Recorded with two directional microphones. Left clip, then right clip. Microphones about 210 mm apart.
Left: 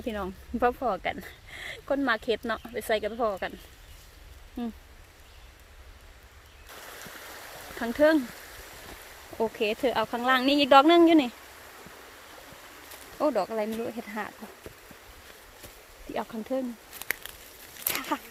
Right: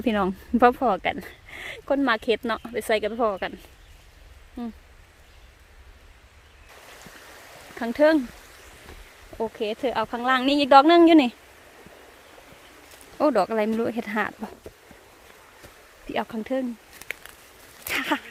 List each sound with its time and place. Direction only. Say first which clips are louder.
0.0 s speech: right 9 dB; 50° right (ahead or behind); by 3.5 s 30° right (ahead or behind)
4.6 s speech: even; 10° right (ahead or behind)
6.9 s stream: left 2 dB; 45° left (ahead or behind)
7.8 s speech: right 3 dB; 15° right (ahead or behind)
9.4 s speech: even; 5° right (ahead or behind); by 11.3 s 25° right (ahead or behind)
13.1 s speech: right 6 dB; 35° right (ahead or behind)
16.1 s speech: right 4 dB; 30° right (ahead or behind)
17.9 s a sound: right 7 dB; 35° right (ahead or behind)